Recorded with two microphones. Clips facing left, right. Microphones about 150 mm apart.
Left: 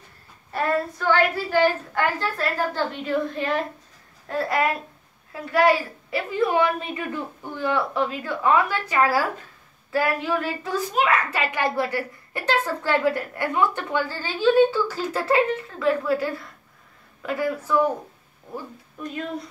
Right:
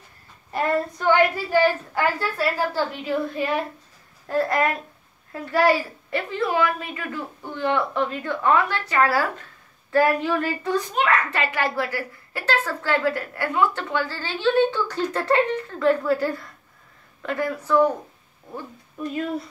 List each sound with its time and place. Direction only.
0.5 s a woman's voice: 15° right (ahead or behind); by 6.2 s centre (ahead or behind)
6.5 s a woman's voice: 25° left (ahead or behind)
7.7 s a child's voice: 5° left (ahead or behind)